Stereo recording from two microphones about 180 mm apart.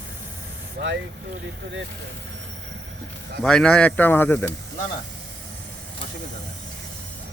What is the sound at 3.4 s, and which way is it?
Speech, 5° left (ahead or behind).